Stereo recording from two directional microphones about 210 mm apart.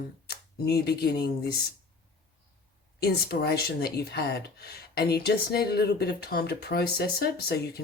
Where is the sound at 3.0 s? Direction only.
50° left (ahead or behind).